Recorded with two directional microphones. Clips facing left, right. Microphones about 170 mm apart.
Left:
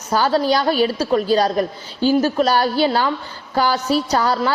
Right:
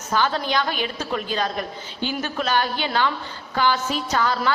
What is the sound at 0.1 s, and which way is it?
A woman's voice, 35° left (ahead or behind).